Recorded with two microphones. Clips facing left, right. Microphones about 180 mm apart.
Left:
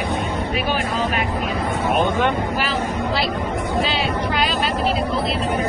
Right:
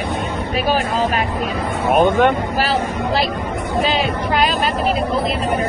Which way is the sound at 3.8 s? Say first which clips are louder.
Right 6 dB; 50° right (ahead or behind).